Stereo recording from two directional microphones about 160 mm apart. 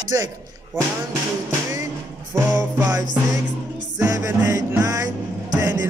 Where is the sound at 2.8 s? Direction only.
20° right (ahead or behind).